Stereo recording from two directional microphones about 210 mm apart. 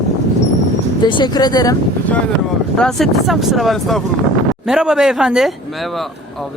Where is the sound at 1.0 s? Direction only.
20° left (ahead or behind).